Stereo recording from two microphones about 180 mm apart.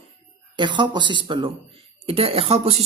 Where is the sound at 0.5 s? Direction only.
25° right (ahead or behind).